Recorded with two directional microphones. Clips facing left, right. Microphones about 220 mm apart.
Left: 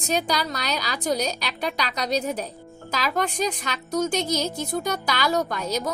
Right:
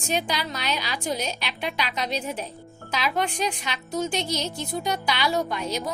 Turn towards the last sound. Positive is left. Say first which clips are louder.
# left 2 dB
turn(degrees=40)  # may be behind; listen again after turning